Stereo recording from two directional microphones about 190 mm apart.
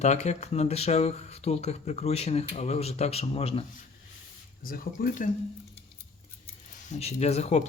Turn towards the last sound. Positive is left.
turn(degrees=35)  # may be behind; listen again after turning